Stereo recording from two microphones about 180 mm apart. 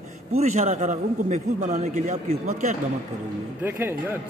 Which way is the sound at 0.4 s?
40° right (ahead or behind).